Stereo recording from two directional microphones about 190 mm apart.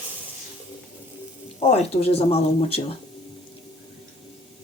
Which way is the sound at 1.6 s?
30° left (ahead or behind).